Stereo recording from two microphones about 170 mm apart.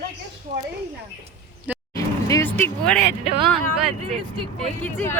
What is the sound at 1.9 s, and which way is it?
Vehicle, 20° left (ahead or behind).